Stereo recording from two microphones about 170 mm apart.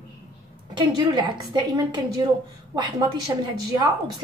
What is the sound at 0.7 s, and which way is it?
A woman's voice, 25° right (ahead or behind).